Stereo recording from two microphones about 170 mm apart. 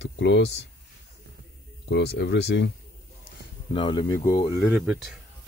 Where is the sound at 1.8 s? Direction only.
90° left.